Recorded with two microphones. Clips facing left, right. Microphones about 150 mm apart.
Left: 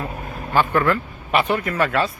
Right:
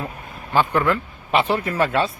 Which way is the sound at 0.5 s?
15° right (ahead or behind).